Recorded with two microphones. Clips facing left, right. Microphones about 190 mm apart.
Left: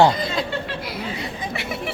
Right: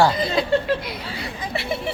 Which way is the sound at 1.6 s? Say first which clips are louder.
Right 5 dB; 30° right (ahead or behind).